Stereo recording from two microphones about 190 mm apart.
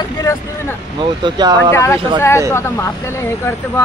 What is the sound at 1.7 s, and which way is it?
Speech, 15° left (ahead or behind).